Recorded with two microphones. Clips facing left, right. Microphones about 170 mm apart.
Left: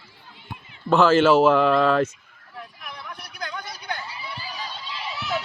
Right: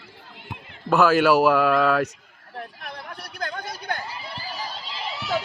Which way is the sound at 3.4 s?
50° right (ahead or behind).